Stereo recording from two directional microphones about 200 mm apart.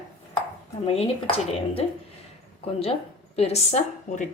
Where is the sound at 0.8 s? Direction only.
30° left (ahead or behind).